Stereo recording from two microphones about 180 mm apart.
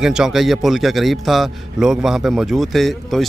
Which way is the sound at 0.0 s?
5° right (ahead or behind).